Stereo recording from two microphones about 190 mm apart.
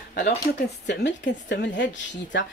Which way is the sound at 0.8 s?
70° left (ahead or behind).